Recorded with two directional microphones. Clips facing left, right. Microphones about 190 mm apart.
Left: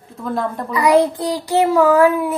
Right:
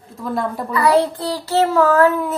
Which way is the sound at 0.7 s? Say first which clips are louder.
Left 2 dB; 15° left (ahead or behind).